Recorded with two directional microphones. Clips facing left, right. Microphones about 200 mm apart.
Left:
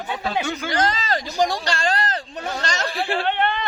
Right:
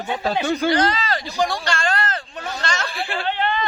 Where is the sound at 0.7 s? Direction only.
45° left (ahead or behind).